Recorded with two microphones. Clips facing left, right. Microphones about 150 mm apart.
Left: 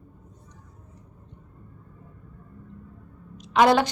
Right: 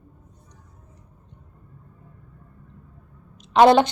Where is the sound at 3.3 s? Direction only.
25° right (ahead or behind).